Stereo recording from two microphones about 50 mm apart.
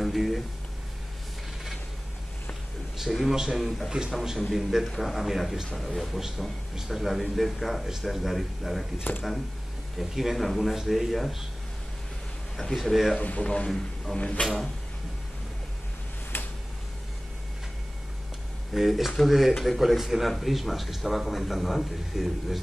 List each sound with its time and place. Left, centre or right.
0.0 s a sound: centre
3.0 s a man's voice: centre
9.1 s speech: left
9.9 s speech: centre
12.6 s speech: centre
13.2 s speech: left
14.4 s speech: centre
18.7 s speech: centre